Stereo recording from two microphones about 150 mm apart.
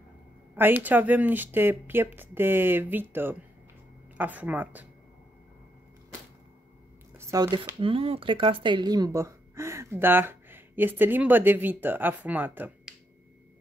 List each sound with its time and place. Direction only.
0.6 s speech: 10° right (ahead or behind)
7.2 s a sound: 20° right (ahead or behind)
7.8 s speech: 40° right (ahead or behind); by 12.9 s 10° right (ahead or behind)